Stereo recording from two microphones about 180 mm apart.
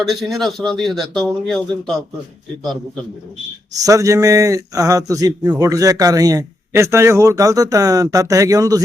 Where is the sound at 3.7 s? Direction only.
20° right (ahead or behind).